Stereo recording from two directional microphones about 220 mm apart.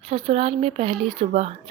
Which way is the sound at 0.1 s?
25° right (ahead or behind).